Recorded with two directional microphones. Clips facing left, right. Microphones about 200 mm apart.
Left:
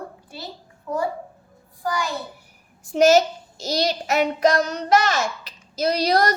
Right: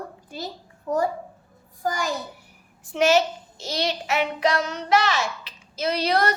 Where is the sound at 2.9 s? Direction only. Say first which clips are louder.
Left 4 dB; 40° left (ahead or behind).